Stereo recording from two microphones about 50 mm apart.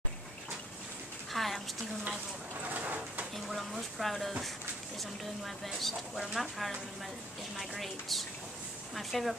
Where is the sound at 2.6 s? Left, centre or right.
Right.